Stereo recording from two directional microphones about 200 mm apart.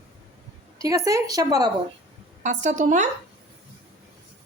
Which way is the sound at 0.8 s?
15° right (ahead or behind).